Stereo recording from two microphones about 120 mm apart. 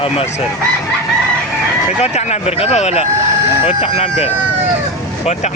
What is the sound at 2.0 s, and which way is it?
Speech, 65° left (ahead or behind).